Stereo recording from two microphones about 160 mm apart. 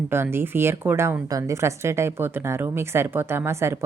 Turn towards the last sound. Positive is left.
turn(degrees=-15)  # may be behind; listen again after turning